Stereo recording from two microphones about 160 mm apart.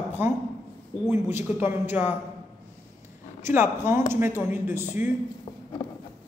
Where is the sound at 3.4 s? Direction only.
15° right (ahead or behind).